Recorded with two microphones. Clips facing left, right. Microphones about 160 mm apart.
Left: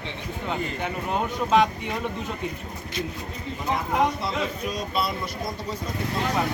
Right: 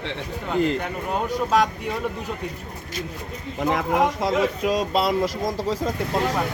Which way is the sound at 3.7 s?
90° right.